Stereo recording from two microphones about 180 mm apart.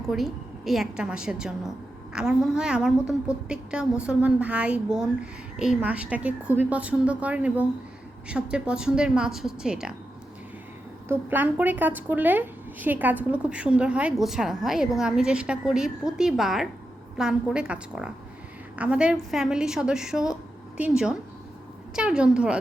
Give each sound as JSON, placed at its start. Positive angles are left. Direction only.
{"t": 0.1, "sound": "a woman's voice", "side_deg": 0}
{"t": 11.1, "sound": "a woman's voice", "side_deg": -10}